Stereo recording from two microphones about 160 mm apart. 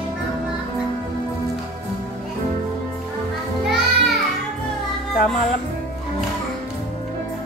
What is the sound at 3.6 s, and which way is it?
Music, 5° right (ahead or behind).